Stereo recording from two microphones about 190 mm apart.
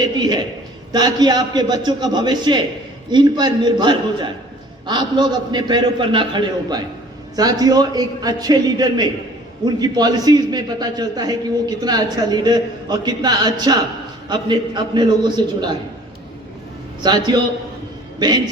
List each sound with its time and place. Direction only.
0.0 s a sound: 20° right (ahead or behind)
0.9 s a man's voice: 20° right (ahead or behind)
17.0 s a man's voice: 25° right (ahead or behind)